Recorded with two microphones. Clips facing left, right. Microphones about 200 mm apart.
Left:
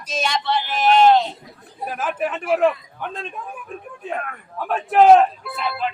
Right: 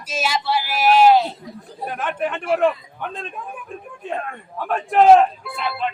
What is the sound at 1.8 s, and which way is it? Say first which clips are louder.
A man's voice: even; centre (ahead or behind).